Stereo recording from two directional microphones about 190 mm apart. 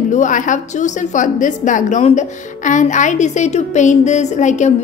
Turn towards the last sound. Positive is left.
turn(degrees=40)  # may be behind; listen again after turning